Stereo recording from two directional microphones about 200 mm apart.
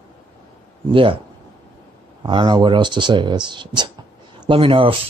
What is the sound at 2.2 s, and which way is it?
Speech, 20° right (ahead or behind).